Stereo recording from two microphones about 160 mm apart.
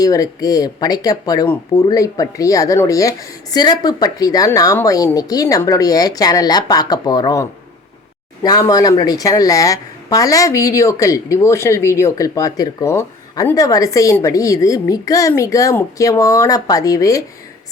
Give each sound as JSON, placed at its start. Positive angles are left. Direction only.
{"t": 0.0, "sound": "a woman's voice", "side_deg": 20}
{"t": 8.4, "sound": "a woman's voice", "side_deg": 25}